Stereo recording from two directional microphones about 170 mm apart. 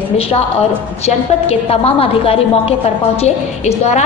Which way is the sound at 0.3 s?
35° left (ahead or behind).